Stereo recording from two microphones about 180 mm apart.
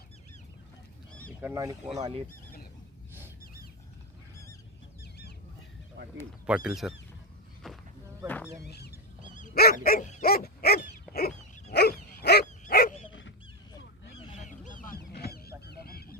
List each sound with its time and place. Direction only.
1.4 s speech: 15° right (ahead or behind)
2.0 s speech: 35° right (ahead or behind)
6.4 s speech: 5° right (ahead or behind)
7.6 s a sound: centre (ahead or behind)
8.6 s speech: 65° left (ahead or behind)
9.3 s dog: 45° left (ahead or behind); by 13.3 s 75° left (ahead or behind)
14.4 s honk: 45° left (ahead or behind)
15.6 s goose: 60° left (ahead or behind)